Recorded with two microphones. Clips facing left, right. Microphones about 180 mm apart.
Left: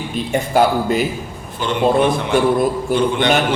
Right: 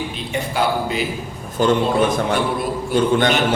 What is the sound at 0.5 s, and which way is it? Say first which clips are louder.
Speech: left 6 dB; 45° left (ahead or behind).